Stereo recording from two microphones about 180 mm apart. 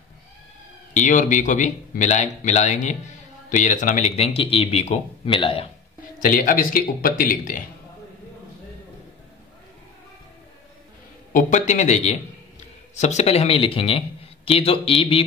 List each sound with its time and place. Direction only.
0.9 s speech: 45° left (ahead or behind)
6.1 s speech: 50° left (ahead or behind)
11.3 s a man's voice: 40° left (ahead or behind)